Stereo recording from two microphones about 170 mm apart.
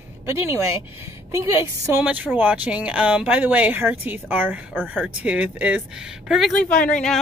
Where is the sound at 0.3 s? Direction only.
15° right (ahead or behind).